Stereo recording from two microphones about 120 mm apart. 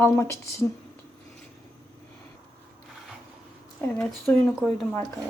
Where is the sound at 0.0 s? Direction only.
20° left (ahead or behind).